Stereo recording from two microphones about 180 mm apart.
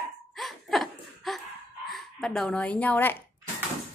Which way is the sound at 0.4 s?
Centre (ahead or behind).